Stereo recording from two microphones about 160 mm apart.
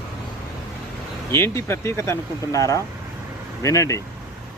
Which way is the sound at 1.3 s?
15° left (ahead or behind).